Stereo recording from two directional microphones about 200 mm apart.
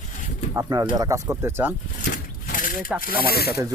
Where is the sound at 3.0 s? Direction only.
45° left (ahead or behind).